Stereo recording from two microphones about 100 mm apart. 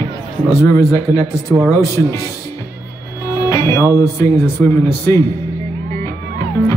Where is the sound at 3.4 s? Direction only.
30° left (ahead or behind).